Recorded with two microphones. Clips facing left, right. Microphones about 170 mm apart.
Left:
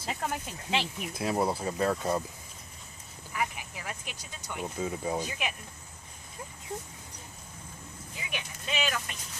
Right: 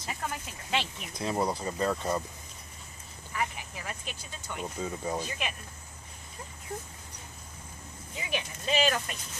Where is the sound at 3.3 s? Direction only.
10° left (ahead or behind).